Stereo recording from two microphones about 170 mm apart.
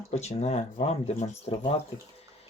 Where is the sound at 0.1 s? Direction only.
40° left (ahead or behind).